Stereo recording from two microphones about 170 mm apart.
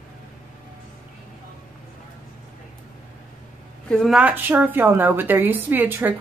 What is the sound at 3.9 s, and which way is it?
A woman's voice, centre (ahead or behind).